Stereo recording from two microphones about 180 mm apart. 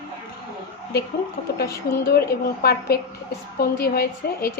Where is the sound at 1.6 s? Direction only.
15° left (ahead or behind).